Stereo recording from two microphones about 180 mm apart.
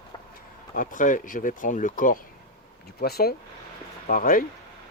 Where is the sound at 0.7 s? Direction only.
45° left (ahead or behind).